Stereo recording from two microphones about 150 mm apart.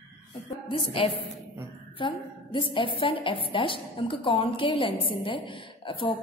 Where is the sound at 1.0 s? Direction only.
35° left (ahead or behind).